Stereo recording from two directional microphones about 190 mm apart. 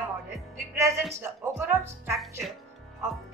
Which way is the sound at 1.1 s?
15° right (ahead or behind).